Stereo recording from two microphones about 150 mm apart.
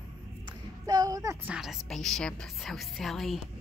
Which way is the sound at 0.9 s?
25° right (ahead or behind).